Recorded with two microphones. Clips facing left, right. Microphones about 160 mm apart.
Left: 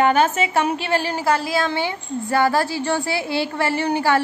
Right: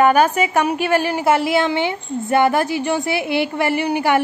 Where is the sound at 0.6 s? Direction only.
15° right (ahead or behind).